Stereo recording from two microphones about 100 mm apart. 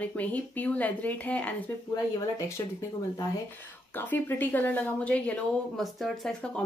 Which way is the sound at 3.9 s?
20° left (ahead or behind).